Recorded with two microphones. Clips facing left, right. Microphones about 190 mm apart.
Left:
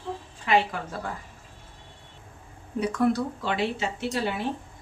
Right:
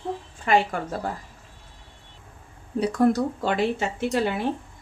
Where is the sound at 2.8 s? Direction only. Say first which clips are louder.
Right 3 dB; 40° right (ahead or behind).